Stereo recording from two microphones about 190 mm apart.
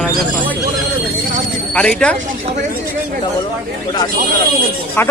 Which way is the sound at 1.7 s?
5° left (ahead or behind).